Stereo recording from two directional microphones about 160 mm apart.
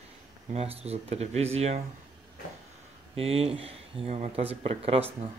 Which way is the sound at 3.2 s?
35° right (ahead or behind).